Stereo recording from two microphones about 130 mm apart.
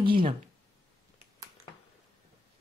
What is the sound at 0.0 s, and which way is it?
Speech, 45° right (ahead or behind).